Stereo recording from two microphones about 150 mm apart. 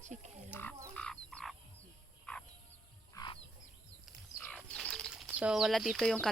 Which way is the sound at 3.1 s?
30° left (ahead or behind).